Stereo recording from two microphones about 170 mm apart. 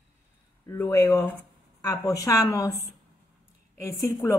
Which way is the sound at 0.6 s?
15° left (ahead or behind).